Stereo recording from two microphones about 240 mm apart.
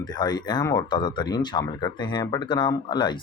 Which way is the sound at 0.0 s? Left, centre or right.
Centre.